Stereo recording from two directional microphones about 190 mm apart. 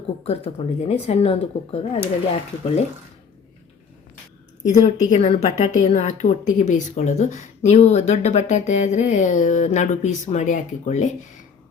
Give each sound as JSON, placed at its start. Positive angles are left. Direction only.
{"t": 0.3, "sound": "a woman's voice", "side_deg": 35}
{"t": 4.6, "sound": "a woman's voice", "side_deg": 40}